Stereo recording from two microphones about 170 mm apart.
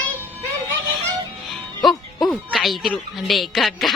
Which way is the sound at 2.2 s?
Centre (ahead or behind).